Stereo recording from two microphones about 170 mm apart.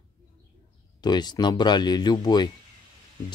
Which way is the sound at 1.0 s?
25° left (ahead or behind).